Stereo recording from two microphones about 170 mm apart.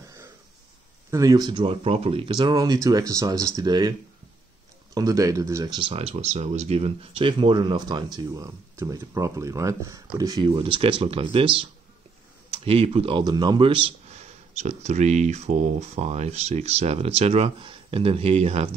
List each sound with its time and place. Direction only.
1.1 s speech: 20° right (ahead or behind)
4.9 s speech: 20° right (ahead or behind)
14.6 s speech: 40° right (ahead or behind)